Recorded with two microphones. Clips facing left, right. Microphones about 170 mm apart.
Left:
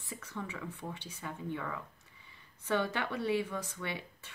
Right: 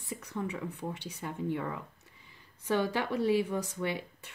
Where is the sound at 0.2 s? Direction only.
15° right (ahead or behind).